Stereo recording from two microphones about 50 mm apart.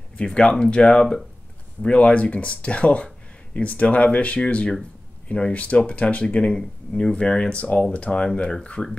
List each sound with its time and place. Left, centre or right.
0.2 s speech: centre
8.8 s speech: centre